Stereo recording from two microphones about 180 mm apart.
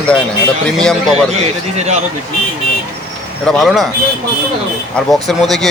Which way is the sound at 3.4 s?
Centre (ahead or behind).